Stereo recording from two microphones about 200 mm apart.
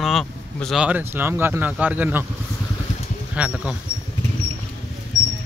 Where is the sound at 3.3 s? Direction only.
5° right (ahead or behind).